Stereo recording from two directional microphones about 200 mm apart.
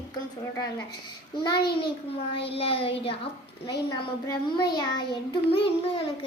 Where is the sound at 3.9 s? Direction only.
20° left (ahead or behind).